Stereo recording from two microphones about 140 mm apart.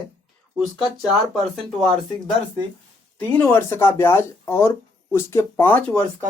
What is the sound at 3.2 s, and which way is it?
Speech, 10° left (ahead or behind).